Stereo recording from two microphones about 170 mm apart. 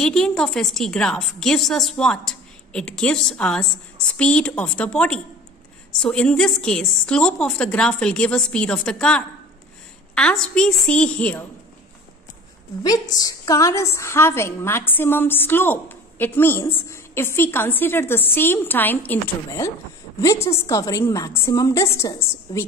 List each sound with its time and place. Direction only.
0.0 s a woman's voice: 5° left (ahead or behind)
12.8 s a woman's voice: 20° left (ahead or behind)